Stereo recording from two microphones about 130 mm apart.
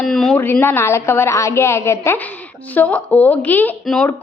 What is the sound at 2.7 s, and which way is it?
Speech, 10° left (ahead or behind).